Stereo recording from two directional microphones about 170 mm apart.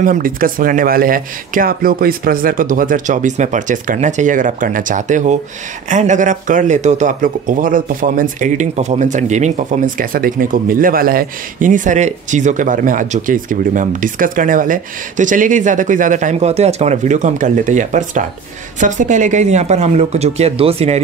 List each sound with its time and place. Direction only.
0.0 s speech: 55° right (ahead or behind); by 21.0 s 35° right (ahead or behind)